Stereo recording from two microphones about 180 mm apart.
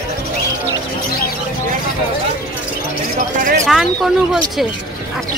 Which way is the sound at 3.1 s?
45° right (ahead or behind).